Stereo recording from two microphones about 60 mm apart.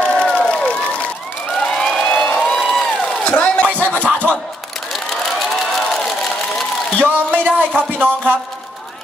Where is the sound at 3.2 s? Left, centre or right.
Left.